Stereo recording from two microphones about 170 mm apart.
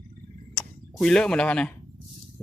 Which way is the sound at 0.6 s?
5° left (ahead or behind).